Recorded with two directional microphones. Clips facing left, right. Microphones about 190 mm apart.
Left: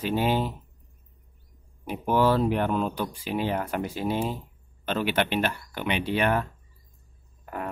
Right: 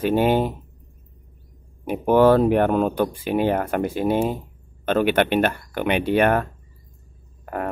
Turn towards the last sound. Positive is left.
turn(degrees=-55)  # may be behind; listen again after turning